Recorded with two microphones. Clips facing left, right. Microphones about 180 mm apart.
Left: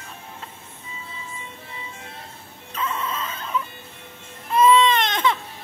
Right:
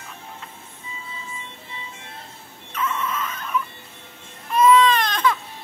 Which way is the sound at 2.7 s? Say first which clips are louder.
Right 1 dB; 30° left (ahead or behind).